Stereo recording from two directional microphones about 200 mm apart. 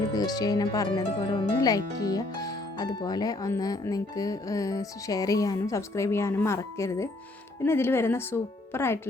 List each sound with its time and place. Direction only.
0.1 s speech: 20° left (ahead or behind)